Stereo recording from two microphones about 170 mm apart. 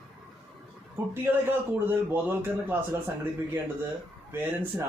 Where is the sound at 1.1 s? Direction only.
10° right (ahead or behind).